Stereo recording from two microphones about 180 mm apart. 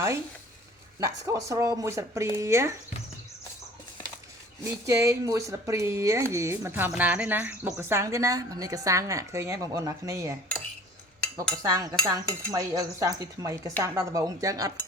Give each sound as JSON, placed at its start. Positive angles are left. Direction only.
{"t": 0.9, "sound": "speech", "side_deg": -15}
{"t": 4.9, "sound": "speech", "side_deg": -15}
{"t": 11.5, "sound": "cutlery", "side_deg": -20}